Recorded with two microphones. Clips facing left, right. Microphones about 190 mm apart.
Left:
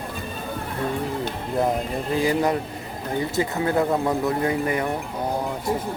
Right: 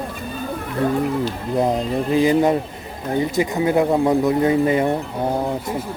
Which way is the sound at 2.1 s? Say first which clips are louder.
Right 5 dB; 20° right (ahead or behind).